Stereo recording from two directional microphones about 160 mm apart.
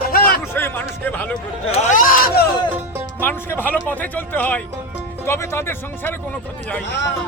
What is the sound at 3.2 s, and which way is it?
Speech, 15° left (ahead or behind).